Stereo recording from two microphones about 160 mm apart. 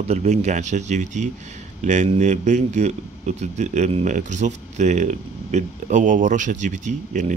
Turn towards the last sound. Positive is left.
turn(degrees=-50)  # may be behind; listen again after turning